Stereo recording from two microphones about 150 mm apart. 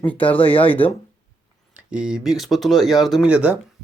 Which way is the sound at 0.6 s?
10° left (ahead or behind).